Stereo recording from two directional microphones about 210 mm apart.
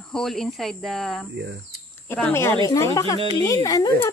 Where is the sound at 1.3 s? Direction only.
55° right (ahead or behind).